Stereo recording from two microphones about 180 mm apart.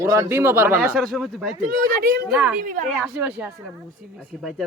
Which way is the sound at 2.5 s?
45° right (ahead or behind).